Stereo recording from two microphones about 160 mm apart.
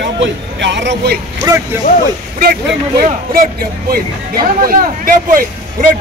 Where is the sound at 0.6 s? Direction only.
90° right.